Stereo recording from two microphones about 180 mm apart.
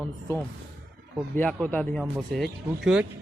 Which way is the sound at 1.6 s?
10° left (ahead or behind).